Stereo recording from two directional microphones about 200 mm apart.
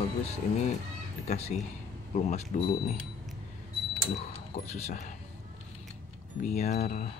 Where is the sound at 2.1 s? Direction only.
35° left (ahead or behind).